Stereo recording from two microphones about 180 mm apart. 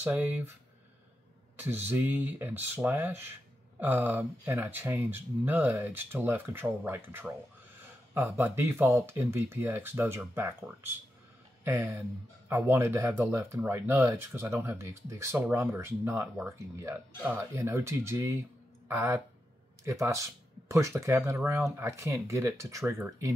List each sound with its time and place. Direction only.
0.0 s speech: 10° right (ahead or behind)
1.9 s speech: 10° right (ahead or behind)